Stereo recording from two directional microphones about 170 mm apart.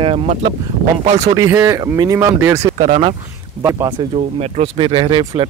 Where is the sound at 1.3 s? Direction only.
20° right (ahead or behind).